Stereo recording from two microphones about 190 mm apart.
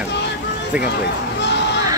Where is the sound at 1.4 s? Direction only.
65° left (ahead or behind).